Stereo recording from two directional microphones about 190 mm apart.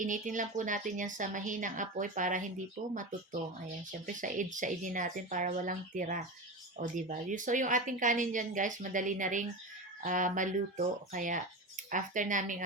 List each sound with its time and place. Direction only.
0.0 s a woman's voice: 40° right (ahead or behind)
4.0 s a woman's voice: 45° right (ahead or behind)